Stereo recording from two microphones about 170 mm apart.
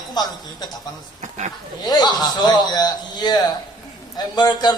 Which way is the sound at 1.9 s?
25° left (ahead or behind).